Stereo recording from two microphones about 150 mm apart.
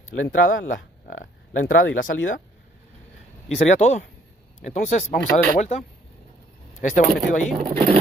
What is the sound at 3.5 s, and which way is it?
Speech, 50° left (ahead or behind).